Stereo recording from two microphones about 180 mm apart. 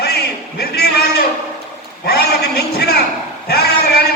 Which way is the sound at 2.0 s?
60° left (ahead or behind).